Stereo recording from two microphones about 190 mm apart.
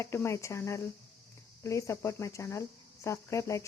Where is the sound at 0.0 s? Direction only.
15° left (ahead or behind).